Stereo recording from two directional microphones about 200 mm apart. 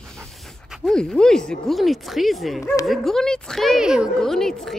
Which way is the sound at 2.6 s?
15° left (ahead or behind).